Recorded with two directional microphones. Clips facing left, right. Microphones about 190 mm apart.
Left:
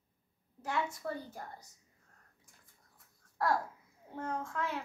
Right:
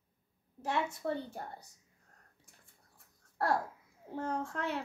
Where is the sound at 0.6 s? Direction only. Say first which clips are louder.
Right 2 dB; 25° right (ahead or behind).